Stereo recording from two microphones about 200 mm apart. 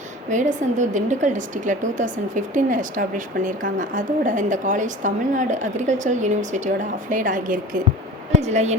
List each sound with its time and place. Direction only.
0.3 s a woman's voice: 40° right (ahead or behind)